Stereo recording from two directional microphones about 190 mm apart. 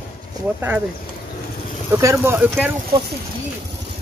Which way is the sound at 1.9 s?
15° right (ahead or behind).